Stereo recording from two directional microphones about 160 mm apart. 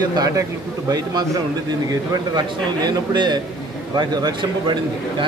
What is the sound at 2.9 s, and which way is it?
Speech, 25° right (ahead or behind).